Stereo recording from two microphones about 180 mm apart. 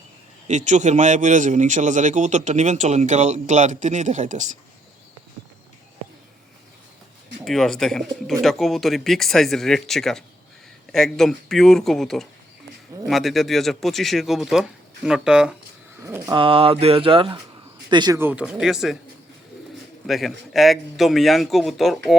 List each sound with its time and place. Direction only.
0.4 s speech: 40° right (ahead or behind)
7.4 s speech: centre (ahead or behind)
16.0 s speech: 15° right (ahead or behind)
16.4 s speech: 30° right (ahead or behind)
18.2 s speech: 10° right (ahead or behind)
20.1 s speech: centre (ahead or behind)